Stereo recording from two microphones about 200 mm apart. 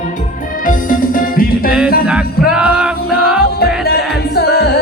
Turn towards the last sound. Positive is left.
turn(degrees=50)  # may be behind; listen again after turning